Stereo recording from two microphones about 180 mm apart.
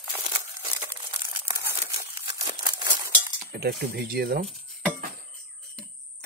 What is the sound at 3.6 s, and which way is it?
Speech, 60° right (ahead or behind).